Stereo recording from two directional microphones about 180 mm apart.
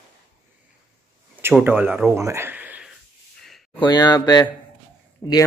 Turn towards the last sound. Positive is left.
turn(degrees=15)  # may be behind; listen again after turning